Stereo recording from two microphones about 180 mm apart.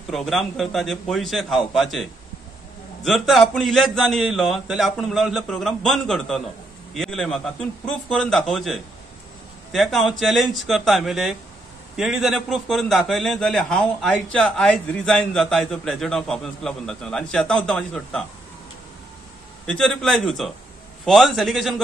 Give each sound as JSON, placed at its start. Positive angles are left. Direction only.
{"t": 0.1, "sound": "a man's voice", "side_deg": 0}
{"t": 19.6, "sound": "a man's voice", "side_deg": 5}